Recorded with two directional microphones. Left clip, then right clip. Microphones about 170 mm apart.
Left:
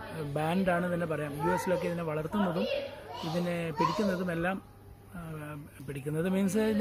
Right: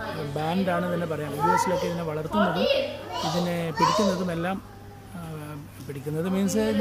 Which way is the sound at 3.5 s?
5° left (ahead or behind).